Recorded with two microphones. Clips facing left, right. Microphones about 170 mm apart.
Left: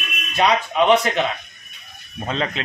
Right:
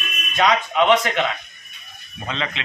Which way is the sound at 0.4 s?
30° left (ahead or behind).